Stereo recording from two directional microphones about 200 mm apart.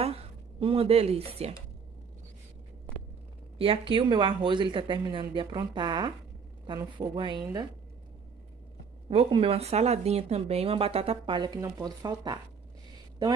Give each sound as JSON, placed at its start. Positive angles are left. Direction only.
{"t": 0.0, "sound": "a sound", "side_deg": -30}
{"t": 3.5, "sound": "speech", "side_deg": -25}
{"t": 9.1, "sound": "speech", "side_deg": -25}